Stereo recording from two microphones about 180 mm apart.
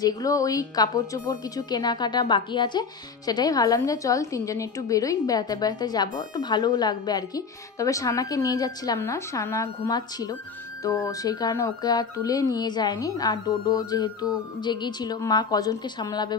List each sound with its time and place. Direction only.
0.0 s a woman's voice: 20° left (ahead or behind)